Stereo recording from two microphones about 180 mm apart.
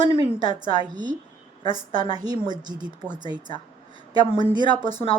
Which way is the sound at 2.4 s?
25° right (ahead or behind).